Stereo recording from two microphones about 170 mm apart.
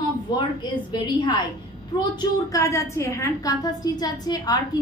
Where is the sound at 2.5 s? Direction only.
20° left (ahead or behind).